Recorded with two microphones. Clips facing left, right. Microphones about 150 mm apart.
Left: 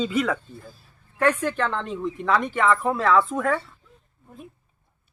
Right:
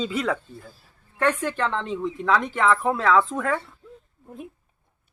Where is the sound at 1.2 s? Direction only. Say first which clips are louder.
Left 1 dB; 10° left (ahead or behind).